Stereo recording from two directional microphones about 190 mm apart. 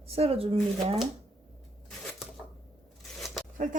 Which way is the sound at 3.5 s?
45° right (ahead or behind).